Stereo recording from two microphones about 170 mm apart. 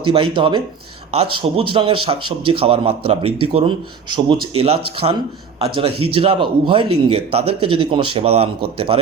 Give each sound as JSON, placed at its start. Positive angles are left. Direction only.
{"t": 0.0, "sound": "speech", "side_deg": -30}